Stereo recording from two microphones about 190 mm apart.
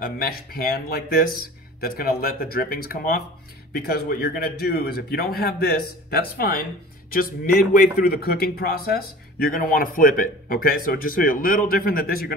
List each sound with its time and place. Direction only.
0.0 s a man's voice: 50° left (ahead or behind)